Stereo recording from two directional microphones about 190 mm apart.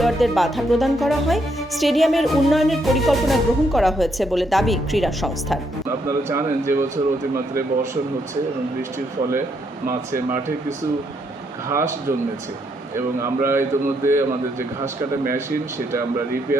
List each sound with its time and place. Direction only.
0.0 s speech: centre (ahead or behind)
6.1 s speech: 15° right (ahead or behind)
11.7 s speech: 15° right (ahead or behind)
13.1 s speech: 15° right (ahead or behind)
15.3 s speech: 15° right (ahead or behind)